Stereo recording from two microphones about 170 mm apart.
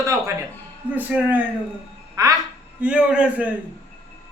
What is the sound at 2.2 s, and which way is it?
Speech, 20° right (ahead or behind).